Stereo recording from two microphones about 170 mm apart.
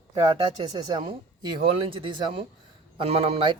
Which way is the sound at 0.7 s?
25° right (ahead or behind).